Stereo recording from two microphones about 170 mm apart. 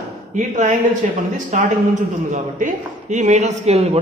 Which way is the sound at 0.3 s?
45° right (ahead or behind).